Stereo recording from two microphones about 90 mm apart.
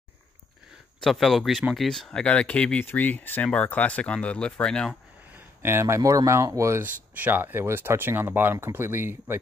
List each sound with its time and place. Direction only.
1.0 s speech: centre (ahead or behind)
5.3 s speech: 25° right (ahead or behind)
6.8 s speech: 20° right (ahead or behind)